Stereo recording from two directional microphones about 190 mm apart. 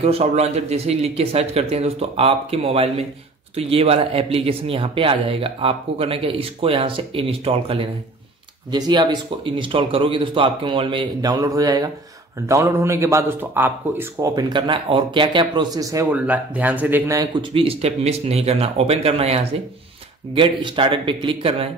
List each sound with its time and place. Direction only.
0.0 s speech: 30° right (ahead or behind)